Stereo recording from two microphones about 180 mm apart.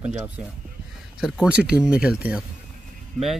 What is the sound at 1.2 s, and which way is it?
Speech, 5° right (ahead or behind).